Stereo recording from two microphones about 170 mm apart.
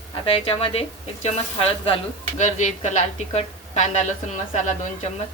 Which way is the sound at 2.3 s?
45° left (ahead or behind).